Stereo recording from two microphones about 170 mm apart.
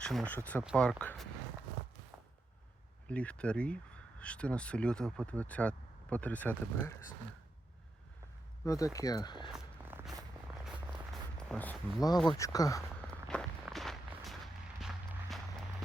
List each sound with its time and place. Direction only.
0.0 s speech: 5° left (ahead or behind)
0.6 s speech: centre (ahead or behind)
3.1 s speech: 5° left (ahead or behind)
8.6 s speech: 20° left (ahead or behind)
9.5 s walk: 15° right (ahead or behind)
10.7 s a sound: centre (ahead or behind)
12.3 s speech: 20° left (ahead or behind)
13.2 s walk: centre (ahead or behind)